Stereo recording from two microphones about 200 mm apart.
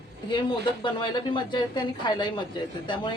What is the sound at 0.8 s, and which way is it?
A woman's voice, 25° left (ahead or behind).